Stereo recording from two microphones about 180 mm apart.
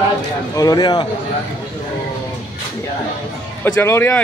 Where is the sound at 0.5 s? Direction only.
20° left (ahead or behind).